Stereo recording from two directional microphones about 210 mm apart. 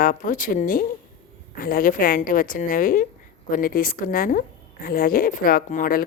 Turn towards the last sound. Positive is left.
turn(degrees=40)  # may be behind; listen again after turning